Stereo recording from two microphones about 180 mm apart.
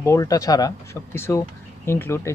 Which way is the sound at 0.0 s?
20° left (ahead or behind).